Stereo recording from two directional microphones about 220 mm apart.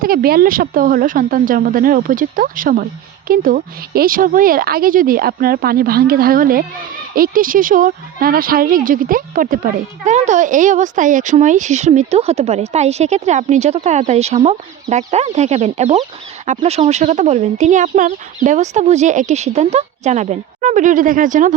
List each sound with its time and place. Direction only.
0.0 s speech: 40° right (ahead or behind)